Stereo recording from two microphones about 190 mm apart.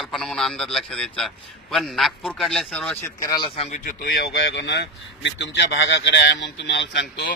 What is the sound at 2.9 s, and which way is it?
Speech, 15° left (ahead or behind).